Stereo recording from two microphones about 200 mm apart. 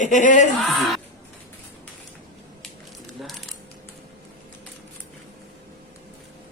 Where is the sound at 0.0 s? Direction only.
40° left (ahead or behind).